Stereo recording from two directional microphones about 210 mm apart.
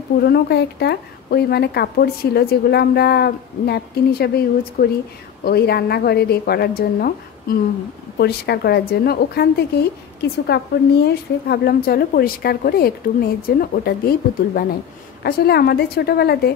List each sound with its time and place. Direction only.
0.2 s a woman's voice: 50° left (ahead or behind)